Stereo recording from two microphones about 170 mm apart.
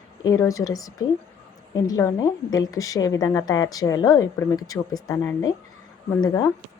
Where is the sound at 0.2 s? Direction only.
20° left (ahead or behind).